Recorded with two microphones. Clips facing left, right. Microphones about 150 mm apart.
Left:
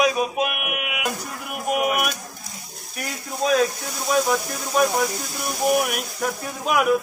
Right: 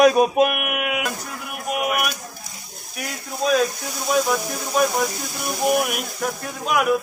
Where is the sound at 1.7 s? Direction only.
Centre (ahead or behind).